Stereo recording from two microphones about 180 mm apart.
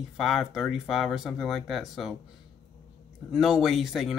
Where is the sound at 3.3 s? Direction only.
Centre (ahead or behind).